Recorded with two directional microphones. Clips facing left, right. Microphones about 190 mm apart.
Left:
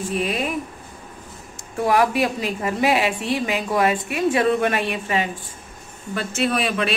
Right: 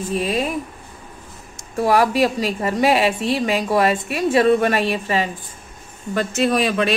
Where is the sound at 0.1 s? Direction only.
35° right (ahead or behind).